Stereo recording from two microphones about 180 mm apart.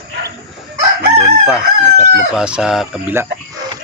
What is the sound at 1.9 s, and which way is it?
Chicken, 45° right (ahead or behind).